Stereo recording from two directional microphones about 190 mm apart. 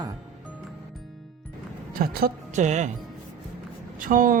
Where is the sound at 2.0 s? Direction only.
50° right (ahead or behind).